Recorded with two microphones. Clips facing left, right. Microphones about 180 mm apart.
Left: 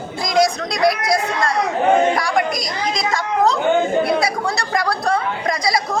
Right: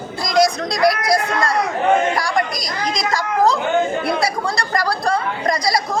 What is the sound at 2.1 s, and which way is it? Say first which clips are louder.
Speech: left 1 dB; centre (ahead or behind).